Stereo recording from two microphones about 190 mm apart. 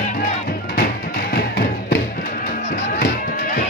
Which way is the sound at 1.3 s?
55° left (ahead or behind).